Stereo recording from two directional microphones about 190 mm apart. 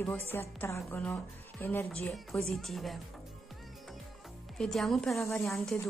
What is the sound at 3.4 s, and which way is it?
Music, centre (ahead or behind).